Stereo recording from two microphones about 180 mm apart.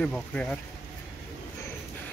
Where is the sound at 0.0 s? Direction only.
5° left (ahead or behind).